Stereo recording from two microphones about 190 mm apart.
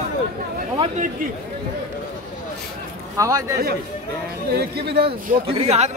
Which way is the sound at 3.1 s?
15° right (ahead or behind).